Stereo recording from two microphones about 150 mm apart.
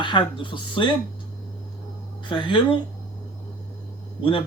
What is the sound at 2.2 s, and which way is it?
Speech, 35° left (ahead or behind).